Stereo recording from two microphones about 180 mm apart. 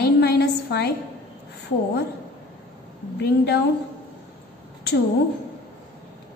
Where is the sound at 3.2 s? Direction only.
65° left (ahead or behind).